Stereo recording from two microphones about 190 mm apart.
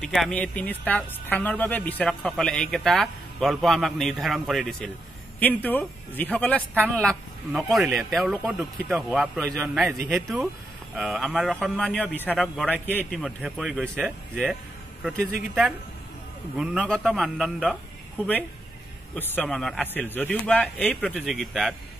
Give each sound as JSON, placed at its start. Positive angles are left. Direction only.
{"t": 0.0, "sound": "a man's voice", "side_deg": 0}
{"t": 6.7, "sound": "speech", "side_deg": -10}
{"t": 7.0, "sound": "speech", "side_deg": 0}
{"t": 19.1, "sound": "a man's voice", "side_deg": 5}